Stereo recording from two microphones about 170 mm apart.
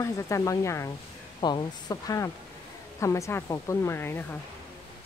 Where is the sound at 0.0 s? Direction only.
15° left (ahead or behind).